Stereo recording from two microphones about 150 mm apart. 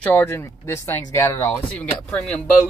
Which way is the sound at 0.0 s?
10° left (ahead or behind).